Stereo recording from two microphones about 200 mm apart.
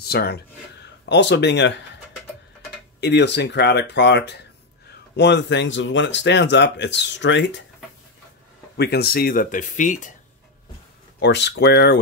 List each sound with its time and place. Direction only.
0.0 s speech: 55° left (ahead or behind)
3.0 s speech: 60° left (ahead or behind)
8.7 s speech: 55° left (ahead or behind); by 10.1 s 40° left (ahead or behind)
11.1 s speech: 60° left (ahead or behind)